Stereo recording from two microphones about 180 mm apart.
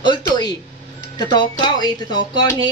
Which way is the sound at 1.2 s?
25° left (ahead or behind).